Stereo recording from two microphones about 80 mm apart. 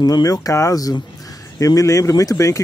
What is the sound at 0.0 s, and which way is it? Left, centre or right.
Speech, left.